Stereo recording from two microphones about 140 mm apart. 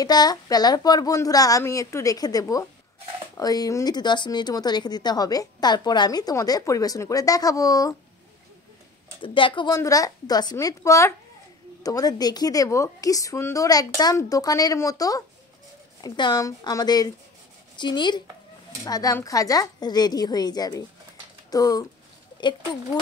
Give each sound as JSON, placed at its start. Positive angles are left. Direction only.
{"t": 0.0, "sound": "speech", "side_deg": 30}
{"t": 9.2, "sound": "speech", "side_deg": 35}
{"t": 9.8, "sound": "speech", "side_deg": 25}